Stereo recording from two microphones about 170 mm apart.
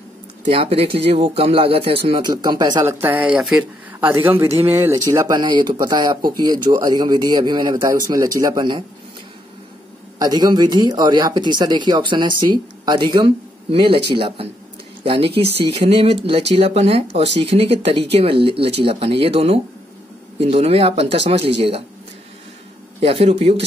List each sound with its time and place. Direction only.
0.5 s speech: 35° right (ahead or behind); by 4.1 s centre (ahead or behind)
4.1 s speech: 15° right (ahead or behind)
10.1 s speech: 25° right (ahead or behind)
23.0 s speech: 35° right (ahead or behind)